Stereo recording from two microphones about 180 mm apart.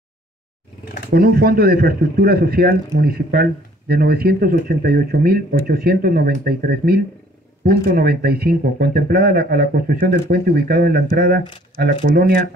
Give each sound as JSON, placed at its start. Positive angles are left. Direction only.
{"t": 1.1, "sound": "speech", "side_deg": -55}